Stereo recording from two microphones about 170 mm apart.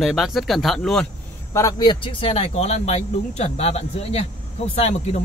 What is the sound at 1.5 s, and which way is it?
Speech, 20° left (ahead or behind).